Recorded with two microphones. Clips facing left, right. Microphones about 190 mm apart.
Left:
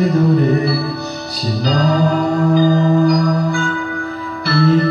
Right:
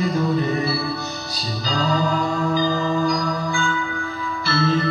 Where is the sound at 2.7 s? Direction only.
40° left (ahead or behind).